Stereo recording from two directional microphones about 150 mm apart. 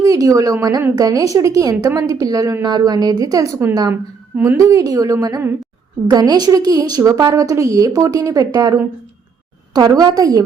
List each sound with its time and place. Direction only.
0.0 s a woman's voice: 25° right (ahead or behind)